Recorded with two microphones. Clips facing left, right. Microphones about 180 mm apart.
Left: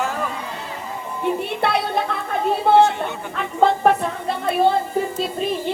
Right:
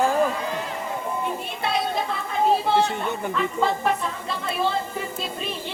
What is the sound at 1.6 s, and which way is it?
Music, 65° left (ahead or behind).